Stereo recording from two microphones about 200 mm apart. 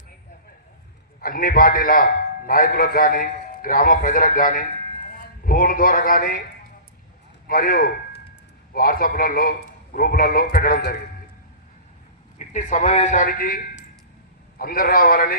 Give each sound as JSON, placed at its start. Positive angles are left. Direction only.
{"t": 1.2, "sound": "a man's voice", "side_deg": 45}
{"t": 7.4, "sound": "a man's voice", "side_deg": 45}
{"t": 12.4, "sound": "a man's voice", "side_deg": 40}